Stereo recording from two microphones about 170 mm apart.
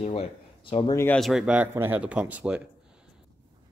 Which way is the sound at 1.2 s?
5° right (ahead or behind).